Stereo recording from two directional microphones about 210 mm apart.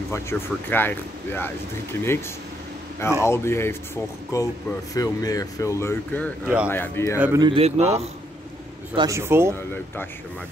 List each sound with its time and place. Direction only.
0.1 s speech: 10° left (ahead or behind)
3.3 s speech: 10° left (ahead or behind)
6.4 s speech: 5° right (ahead or behind)
6.7 s speech: 10° left (ahead or behind)
7.2 s speech: 10° right (ahead or behind)
7.4 s a man's voice: 30° right (ahead or behind)
8.9 s speech: 15° right (ahead or behind)